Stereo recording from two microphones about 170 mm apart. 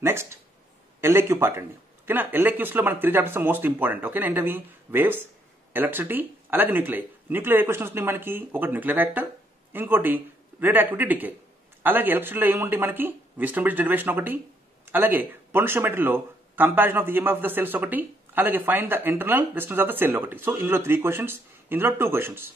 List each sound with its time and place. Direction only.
0.0 s speech: 15° right (ahead or behind)